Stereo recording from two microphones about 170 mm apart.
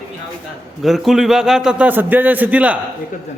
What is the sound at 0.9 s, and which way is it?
A man's voice, centre (ahead or behind).